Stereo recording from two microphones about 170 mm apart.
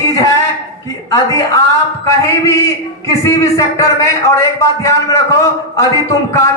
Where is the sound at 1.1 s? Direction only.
20° left (ahead or behind).